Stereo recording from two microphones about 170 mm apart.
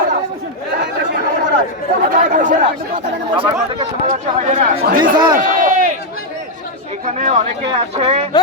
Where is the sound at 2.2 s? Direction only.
50° right (ahead or behind).